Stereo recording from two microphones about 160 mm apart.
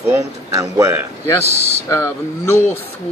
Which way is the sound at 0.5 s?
20° right (ahead or behind).